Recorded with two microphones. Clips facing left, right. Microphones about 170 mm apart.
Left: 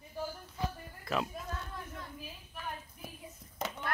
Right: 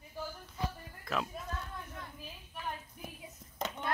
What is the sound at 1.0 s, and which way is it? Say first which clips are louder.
Speech: left 2 dB; centre (ahead or behind).